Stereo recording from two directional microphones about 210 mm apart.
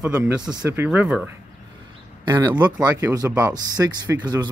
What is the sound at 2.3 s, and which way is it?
Speech, 20° right (ahead or behind).